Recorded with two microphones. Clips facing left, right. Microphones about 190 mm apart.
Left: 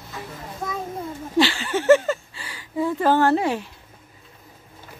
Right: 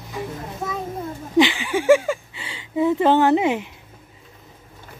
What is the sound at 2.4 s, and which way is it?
Speech, 25° right (ahead or behind).